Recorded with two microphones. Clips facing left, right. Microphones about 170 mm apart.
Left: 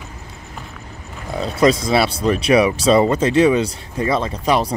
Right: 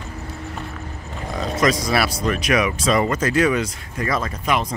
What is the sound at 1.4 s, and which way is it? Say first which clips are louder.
Speech: left 5 dB; 30° left (ahead or behind).